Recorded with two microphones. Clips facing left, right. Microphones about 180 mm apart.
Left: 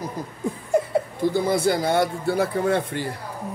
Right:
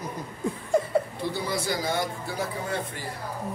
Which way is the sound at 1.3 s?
55° left (ahead or behind).